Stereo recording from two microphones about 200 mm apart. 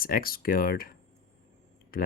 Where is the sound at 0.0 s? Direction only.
45° left (ahead or behind).